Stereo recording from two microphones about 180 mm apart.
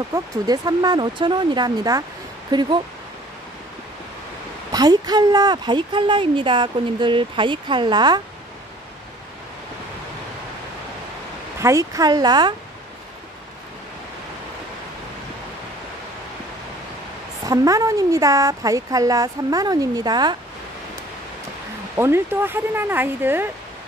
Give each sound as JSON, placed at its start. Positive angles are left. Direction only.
{"t": 0.1, "sound": "speech", "side_deg": -20}
{"t": 4.7, "sound": "speech", "side_deg": -20}
{"t": 11.6, "sound": "speech", "side_deg": -20}
{"t": 17.5, "sound": "speech", "side_deg": -20}
{"t": 21.9, "sound": "speech", "side_deg": -15}